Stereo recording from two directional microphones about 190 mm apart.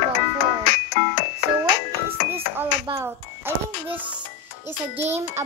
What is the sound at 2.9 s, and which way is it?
Music, 25° right (ahead or behind).